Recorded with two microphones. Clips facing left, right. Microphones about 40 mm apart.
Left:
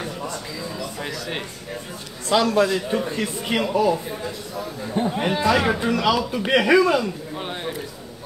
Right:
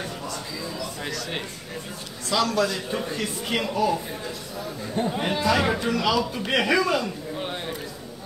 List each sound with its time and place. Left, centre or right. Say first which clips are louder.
0.7 s a sound: left 1 dB; centre
2.2 s a man's voice: left 5 dB; left
3.8 s speech: left 3 dB; centre